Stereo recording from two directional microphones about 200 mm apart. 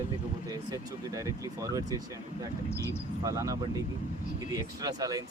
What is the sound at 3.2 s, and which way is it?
Speech, 15° right (ahead or behind).